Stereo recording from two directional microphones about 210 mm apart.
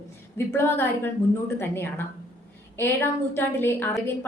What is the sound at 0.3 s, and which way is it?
A woman's voice, 10° left (ahead or behind).